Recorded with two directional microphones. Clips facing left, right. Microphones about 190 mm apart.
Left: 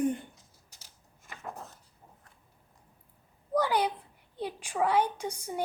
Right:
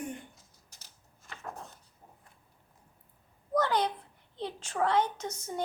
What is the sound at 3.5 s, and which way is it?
A woman's voice, 10° left (ahead or behind).